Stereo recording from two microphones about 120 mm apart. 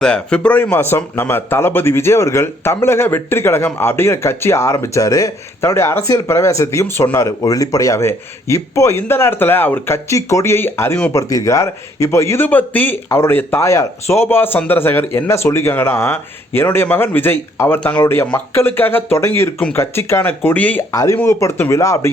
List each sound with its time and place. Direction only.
0.0 s speech: 10° left (ahead or behind)
20.9 s speech: 25° left (ahead or behind)